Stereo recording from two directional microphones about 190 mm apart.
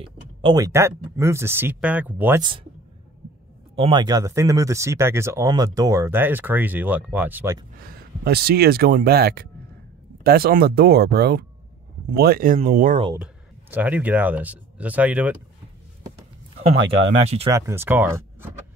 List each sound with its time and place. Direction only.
0.0 s speech: 25° right (ahead or behind); by 2.4 s 10° right (ahead or behind)
3.7 s speech: 25° right (ahead or behind); by 7.5 s 10° right (ahead or behind)
7.8 s speech: 55° right (ahead or behind)
13.2 s speech: 10° right (ahead or behind)
17.5 s speech: 15° right (ahead or behind)